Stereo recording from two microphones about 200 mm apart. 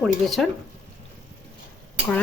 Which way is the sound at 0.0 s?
Centre (ahead or behind).